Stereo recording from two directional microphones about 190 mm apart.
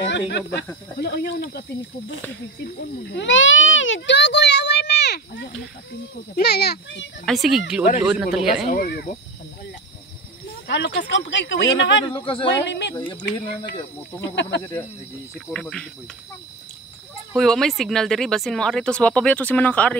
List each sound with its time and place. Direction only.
0.0 s a child's voice: 70° left (ahead or behind)
2.6 s a child's voice: 65° left (ahead or behind)
7.2 s speech: centre (ahead or behind)
8.6 s speech: 50° left (ahead or behind)
10.7 s speech: 65° left (ahead or behind)
12.0 s speech: 25° left (ahead or behind)
12.6 s speech: 65° left (ahead or behind)
12.9 s speech: 20° left (ahead or behind)
14.2 s a child's voice: 65° left (ahead or behind)
14.6 s speech: 15° left (ahead or behind)
15.3 s speech: centre (ahead or behind)
17.4 s speech: centre (ahead or behind)